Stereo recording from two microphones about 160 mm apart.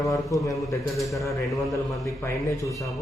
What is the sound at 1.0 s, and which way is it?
Speech, centre (ahead or behind).